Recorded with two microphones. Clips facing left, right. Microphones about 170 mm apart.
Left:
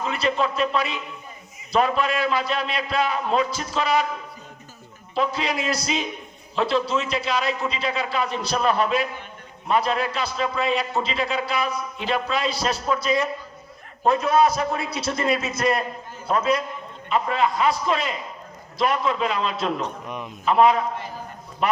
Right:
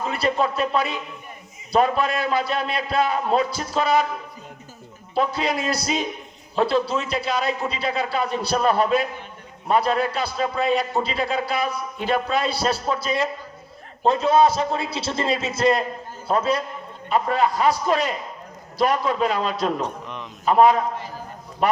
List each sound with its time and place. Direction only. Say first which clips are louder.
0.0 s a man's voice: right 1 dB; 40° right (ahead or behind)
5.1 s a man's voice: right 2 dB; 40° right (ahead or behind)
12.5 s a man's voice: right 1 dB; 30° right (ahead or behind)
17.1 s a man's voice: right 2 dB; 40° right (ahead or behind)
20.1 s speech: left 2 dB; 10° left (ahead or behind)
20.4 s a man's voice: right 2 dB; 40° right (ahead or behind)